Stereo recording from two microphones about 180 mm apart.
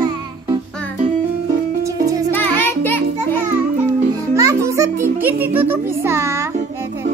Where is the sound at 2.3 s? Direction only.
10° left (ahead or behind).